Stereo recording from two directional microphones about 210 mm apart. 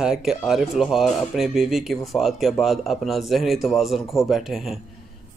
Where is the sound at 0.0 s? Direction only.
Centre (ahead or behind).